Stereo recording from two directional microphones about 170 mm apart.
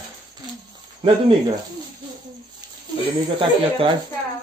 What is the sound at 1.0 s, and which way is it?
Speech, 35° right (ahead or behind).